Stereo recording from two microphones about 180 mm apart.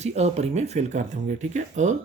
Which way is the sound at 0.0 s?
40° right (ahead or behind).